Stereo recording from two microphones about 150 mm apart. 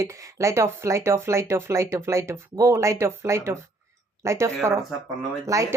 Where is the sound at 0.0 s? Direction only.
20° right (ahead or behind).